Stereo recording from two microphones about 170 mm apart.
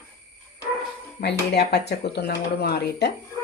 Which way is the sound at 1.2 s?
75° left (ahead or behind).